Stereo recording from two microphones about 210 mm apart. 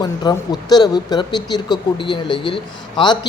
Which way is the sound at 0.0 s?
20° left (ahead or behind).